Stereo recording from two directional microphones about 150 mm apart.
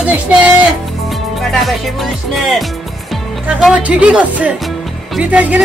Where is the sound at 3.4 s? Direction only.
5° right (ahead or behind).